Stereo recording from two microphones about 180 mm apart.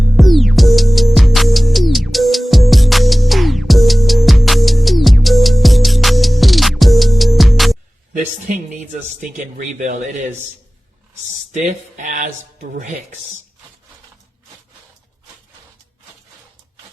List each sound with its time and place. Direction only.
0.2 s music: centre (ahead or behind)
8.1 s a sound: 45° right (ahead or behind)
11.5 s speech: 45° right (ahead or behind)